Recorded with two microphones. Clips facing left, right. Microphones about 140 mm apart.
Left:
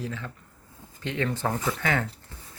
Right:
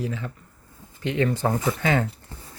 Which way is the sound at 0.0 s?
10° right (ahead or behind).